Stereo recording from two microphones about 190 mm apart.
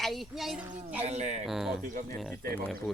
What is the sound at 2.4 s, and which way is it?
Speech, 55° right (ahead or behind).